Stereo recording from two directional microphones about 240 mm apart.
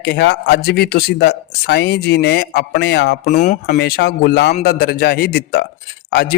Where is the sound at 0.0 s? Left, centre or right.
Left.